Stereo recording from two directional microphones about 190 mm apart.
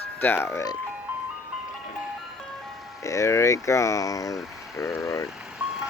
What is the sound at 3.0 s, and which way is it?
Speech, 15° left (ahead or behind).